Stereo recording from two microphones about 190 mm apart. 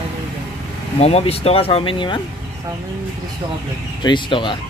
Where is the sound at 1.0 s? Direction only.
30° left (ahead or behind).